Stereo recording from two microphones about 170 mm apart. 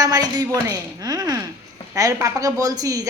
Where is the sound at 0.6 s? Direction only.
20° right (ahead or behind).